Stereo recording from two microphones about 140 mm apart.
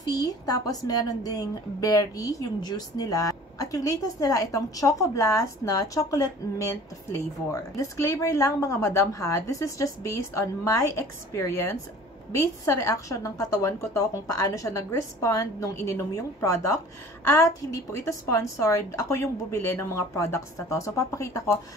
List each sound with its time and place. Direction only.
0.1 s a woman's voice: 25° left (ahead or behind)